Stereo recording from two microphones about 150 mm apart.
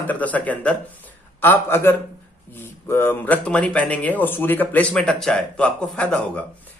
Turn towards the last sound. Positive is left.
turn(degrees=5)  # may be behind; listen again after turning